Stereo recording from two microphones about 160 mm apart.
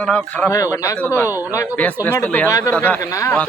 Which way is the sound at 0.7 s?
20° left (ahead or behind).